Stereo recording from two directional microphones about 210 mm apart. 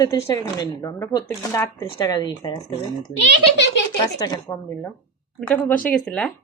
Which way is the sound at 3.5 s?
55° left (ahead or behind).